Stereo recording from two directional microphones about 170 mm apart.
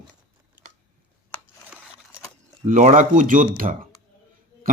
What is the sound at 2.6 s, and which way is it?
Speech, 50° right (ahead or behind).